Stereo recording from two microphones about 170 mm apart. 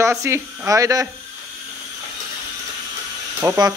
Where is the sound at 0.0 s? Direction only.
15° right (ahead or behind).